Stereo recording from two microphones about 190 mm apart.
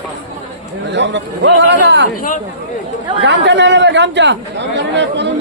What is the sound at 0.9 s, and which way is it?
Speech, 65° right (ahead or behind).